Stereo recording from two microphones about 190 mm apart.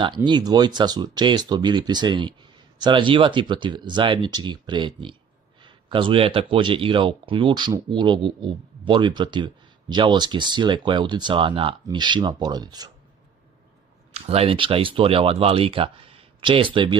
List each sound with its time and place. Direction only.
0.0 s speech: 25° right (ahead or behind)
14.1 s speech: 30° right (ahead or behind)